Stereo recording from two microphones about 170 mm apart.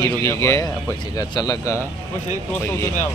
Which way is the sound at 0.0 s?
20° left (ahead or behind).